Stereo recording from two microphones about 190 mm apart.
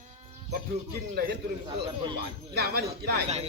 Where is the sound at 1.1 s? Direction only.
50° right (ahead or behind).